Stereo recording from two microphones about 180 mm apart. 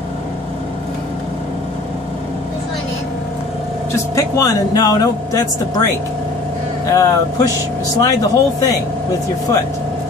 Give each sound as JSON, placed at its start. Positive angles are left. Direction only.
{"t": 3.9, "sound": "speech", "side_deg": 15}
{"t": 6.9, "sound": "speech", "side_deg": 20}